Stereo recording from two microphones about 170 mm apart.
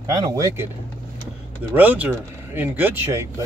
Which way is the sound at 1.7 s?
10° right (ahead or behind).